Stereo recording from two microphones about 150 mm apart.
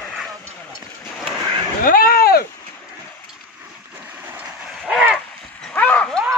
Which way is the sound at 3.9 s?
10° right (ahead or behind).